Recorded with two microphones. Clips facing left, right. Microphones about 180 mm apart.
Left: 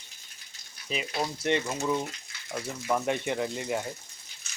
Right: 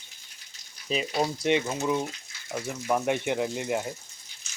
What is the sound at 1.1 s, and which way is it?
Speech, 15° right (ahead or behind).